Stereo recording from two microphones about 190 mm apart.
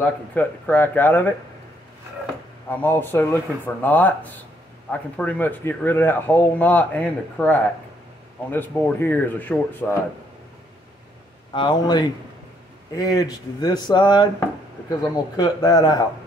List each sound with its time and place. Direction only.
0.0 s speech: 10° left (ahead or behind)
2.7 s speech: 10° left (ahead or behind)
11.5 s speech: 25° left (ahead or behind)